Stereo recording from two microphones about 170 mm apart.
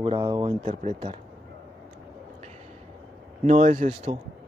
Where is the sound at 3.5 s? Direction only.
50° right (ahead or behind).